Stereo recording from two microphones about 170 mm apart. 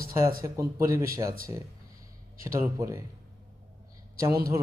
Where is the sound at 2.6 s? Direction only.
15° right (ahead or behind).